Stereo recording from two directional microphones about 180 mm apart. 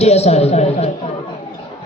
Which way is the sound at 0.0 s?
35° left (ahead or behind).